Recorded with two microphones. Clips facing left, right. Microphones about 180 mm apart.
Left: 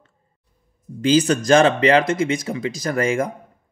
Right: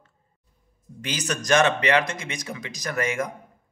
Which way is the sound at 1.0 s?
30° left (ahead or behind).